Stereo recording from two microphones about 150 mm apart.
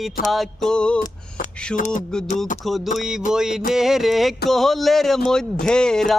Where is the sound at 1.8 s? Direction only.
55° left (ahead or behind).